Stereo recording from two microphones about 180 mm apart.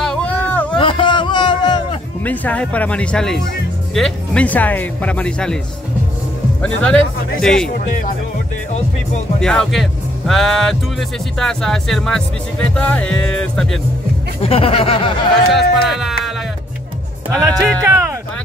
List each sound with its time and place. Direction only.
0.0 s a sound: 5° left (ahead or behind)
0.7 s a sound: 30° left (ahead or behind)
2.2 s speech: 10° left (ahead or behind)
6.6 s speech: 5° left (ahead or behind)
9.4 s speech: 5° left (ahead or behind)
14.4 s speech: 30° left (ahead or behind)
15.5 s speech: centre (ahead or behind)
17.3 s speech: 20° right (ahead or behind)